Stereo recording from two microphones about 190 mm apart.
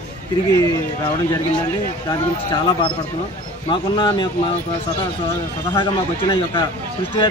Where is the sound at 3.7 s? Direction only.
25° left (ahead or behind).